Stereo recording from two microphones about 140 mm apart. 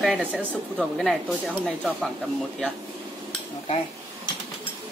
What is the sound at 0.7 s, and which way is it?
Speech, centre (ahead or behind).